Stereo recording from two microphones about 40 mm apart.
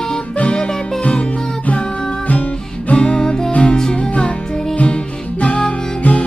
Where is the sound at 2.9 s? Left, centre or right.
Left.